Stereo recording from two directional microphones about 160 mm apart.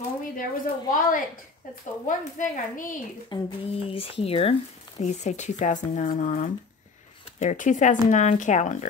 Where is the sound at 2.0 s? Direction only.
55° left (ahead or behind).